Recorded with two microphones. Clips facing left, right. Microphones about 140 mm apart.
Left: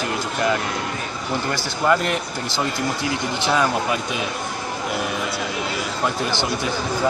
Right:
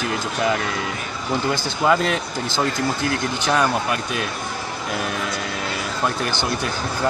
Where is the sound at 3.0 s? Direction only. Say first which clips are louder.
Right 1 dB; 5° left (ahead or behind).